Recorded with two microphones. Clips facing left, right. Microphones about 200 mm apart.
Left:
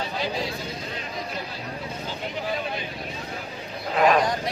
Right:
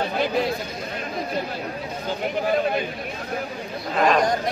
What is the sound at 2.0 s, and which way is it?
Speech, 50° right (ahead or behind).